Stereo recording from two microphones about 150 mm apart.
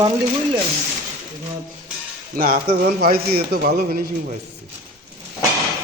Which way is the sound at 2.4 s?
75° right (ahead or behind).